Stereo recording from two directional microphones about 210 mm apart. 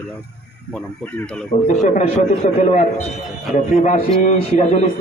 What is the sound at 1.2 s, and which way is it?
Speech, 5° left (ahead or behind).